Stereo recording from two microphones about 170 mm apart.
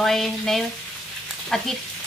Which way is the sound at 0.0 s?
Centre (ahead or behind).